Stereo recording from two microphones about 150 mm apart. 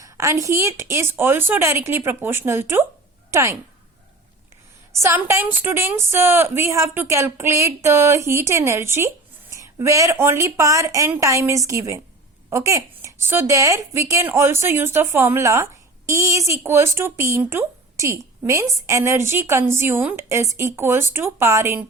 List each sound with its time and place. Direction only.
0.0 s a woman's voice: 20° right (ahead or behind)
4.9 s a woman's voice: 20° right (ahead or behind)